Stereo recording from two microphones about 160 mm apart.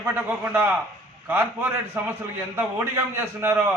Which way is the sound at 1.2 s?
15° right (ahead or behind).